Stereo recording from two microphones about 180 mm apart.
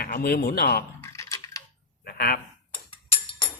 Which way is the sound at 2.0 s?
60° left (ahead or behind).